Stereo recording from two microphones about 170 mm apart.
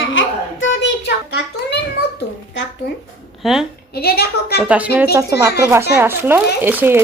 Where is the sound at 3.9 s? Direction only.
65° left (ahead or behind).